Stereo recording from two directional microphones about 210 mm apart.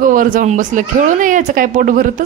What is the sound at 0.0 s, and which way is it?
Speech, 40° right (ahead or behind).